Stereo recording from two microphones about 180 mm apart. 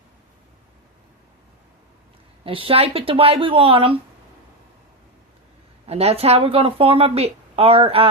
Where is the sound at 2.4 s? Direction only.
30° right (ahead or behind).